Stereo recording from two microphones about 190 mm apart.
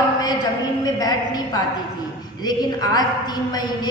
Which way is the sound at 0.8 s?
20° left (ahead or behind).